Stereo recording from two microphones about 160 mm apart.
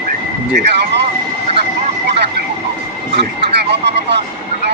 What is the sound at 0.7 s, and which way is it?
Vehicle, 90° right.